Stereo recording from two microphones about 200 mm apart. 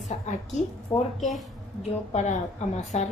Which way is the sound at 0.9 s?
5° left (ahead or behind).